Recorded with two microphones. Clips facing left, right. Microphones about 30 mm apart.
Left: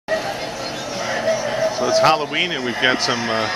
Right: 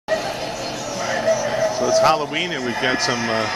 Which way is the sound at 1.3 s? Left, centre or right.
Left.